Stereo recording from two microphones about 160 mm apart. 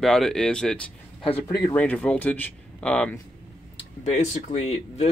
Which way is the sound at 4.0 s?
45° left (ahead or behind).